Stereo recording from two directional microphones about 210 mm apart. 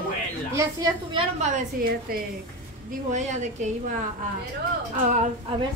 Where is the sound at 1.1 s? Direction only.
30° right (ahead or behind).